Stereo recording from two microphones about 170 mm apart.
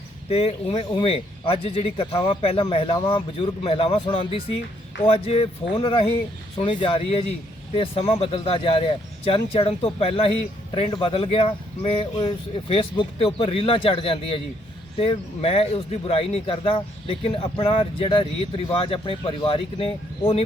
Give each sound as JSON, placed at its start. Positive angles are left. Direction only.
{"t": 0.3, "sound": "speech", "side_deg": 35}